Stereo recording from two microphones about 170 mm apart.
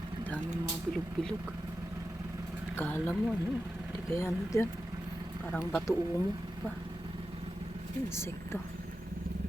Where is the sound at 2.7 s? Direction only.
10° left (ahead or behind).